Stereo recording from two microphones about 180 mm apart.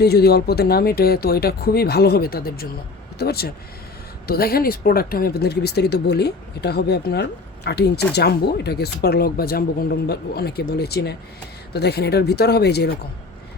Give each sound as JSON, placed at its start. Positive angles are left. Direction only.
{"t": 0.0, "sound": "speech", "side_deg": 60}